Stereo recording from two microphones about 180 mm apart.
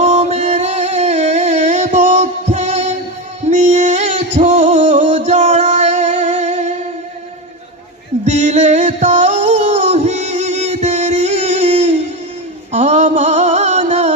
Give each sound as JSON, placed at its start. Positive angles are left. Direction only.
{"t": 0.0, "sound": "music", "side_deg": -40}
{"t": 8.3, "sound": "music", "side_deg": -40}